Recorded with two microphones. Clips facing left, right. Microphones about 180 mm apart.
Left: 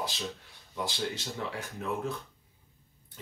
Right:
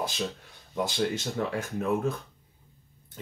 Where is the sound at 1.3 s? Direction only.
50° right (ahead or behind).